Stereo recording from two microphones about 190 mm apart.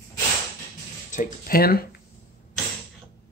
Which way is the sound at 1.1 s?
45° left (ahead or behind).